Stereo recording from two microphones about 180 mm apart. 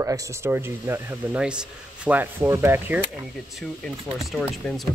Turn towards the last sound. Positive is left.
turn(degrees=0)  # may be behind; listen again after turning